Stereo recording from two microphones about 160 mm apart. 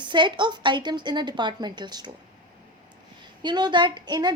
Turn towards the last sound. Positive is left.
turn(degrees=-25)  # may be behind; listen again after turning